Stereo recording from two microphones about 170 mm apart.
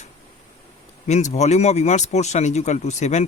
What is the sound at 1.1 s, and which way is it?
Speech, 40° left (ahead or behind).